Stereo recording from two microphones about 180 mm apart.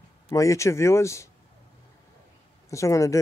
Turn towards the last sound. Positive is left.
turn(degrees=15)  # may be behind; listen again after turning